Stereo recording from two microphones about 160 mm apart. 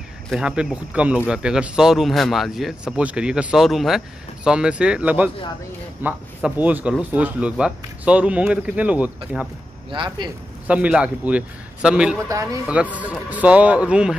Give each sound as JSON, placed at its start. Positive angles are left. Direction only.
{"t": 0.3, "sound": "speech", "side_deg": -5}
{"t": 9.8, "sound": "speech", "side_deg": -30}
{"t": 10.7, "sound": "speech", "side_deg": -5}